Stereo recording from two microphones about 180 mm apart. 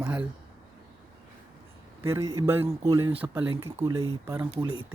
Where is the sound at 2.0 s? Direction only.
15° right (ahead or behind).